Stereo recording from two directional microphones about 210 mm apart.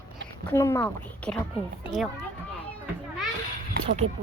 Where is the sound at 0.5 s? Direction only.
10° left (ahead or behind).